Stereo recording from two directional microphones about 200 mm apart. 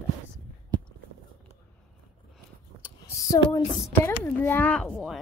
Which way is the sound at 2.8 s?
15° left (ahead or behind).